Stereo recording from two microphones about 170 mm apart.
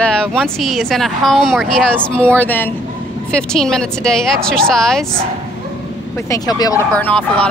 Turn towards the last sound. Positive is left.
turn(degrees=10)  # may be behind; listen again after turning